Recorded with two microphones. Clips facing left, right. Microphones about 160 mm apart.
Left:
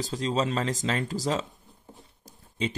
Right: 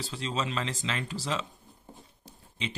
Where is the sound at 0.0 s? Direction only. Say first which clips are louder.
Left 6 dB; 40° left (ahead or behind).